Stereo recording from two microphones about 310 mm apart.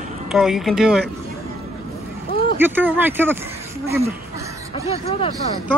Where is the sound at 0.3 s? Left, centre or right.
Centre.